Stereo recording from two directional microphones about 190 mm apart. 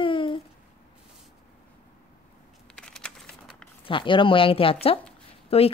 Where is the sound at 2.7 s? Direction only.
5° left (ahead or behind).